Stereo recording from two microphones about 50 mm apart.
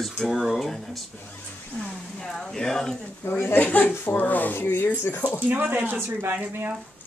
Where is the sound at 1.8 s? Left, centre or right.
Centre.